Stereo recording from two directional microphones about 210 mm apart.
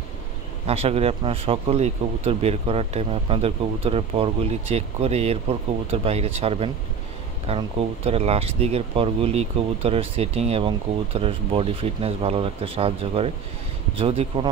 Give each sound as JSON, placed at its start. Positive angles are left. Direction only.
{"t": 0.7, "sound": "speech", "side_deg": -30}